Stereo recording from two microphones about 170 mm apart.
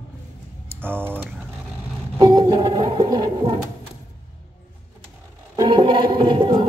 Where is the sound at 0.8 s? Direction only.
10° right (ahead or behind).